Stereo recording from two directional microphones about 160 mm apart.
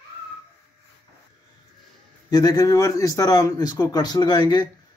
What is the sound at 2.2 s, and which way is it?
Speech, 25° left (ahead or behind).